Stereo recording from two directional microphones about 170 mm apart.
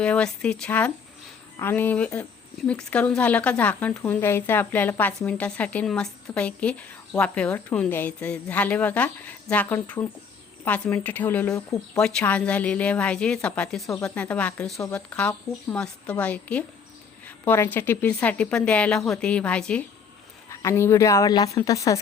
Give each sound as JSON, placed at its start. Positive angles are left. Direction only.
{"t": 0.0, "sound": "speech", "side_deg": 5}
{"t": 20.5, "sound": "a woman's voice", "side_deg": 15}